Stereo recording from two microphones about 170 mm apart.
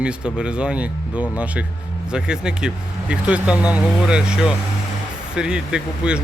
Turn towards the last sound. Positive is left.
turn(degrees=-5)  # may be behind; listen again after turning